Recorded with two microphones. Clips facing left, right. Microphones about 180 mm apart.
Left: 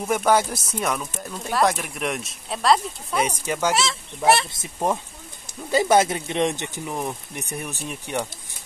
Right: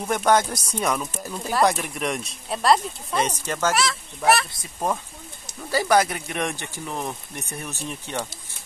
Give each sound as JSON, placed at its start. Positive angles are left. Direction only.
{"t": 0.0, "sound": "speech", "side_deg": 5}
{"t": 3.7, "sound": "speech", "side_deg": 25}
{"t": 5.7, "sound": "speech", "side_deg": 20}